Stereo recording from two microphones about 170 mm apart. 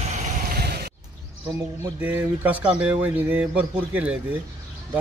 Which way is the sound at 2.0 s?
10° right (ahead or behind).